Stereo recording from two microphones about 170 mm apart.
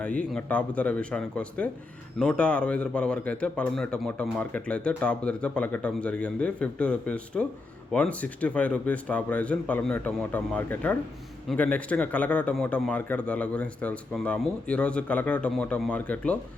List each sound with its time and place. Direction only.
0.0 s a man's voice: 5° left (ahead or behind)